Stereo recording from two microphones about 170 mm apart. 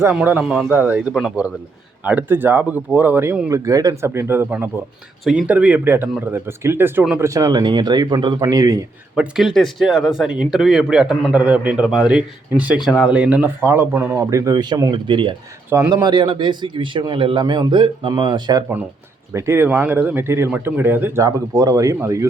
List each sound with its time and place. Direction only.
0.0 s a man's voice: 10° right (ahead or behind)
3.5 s a man's voice: 20° right (ahead or behind)
9.1 s a man's voice: 5° right (ahead or behind)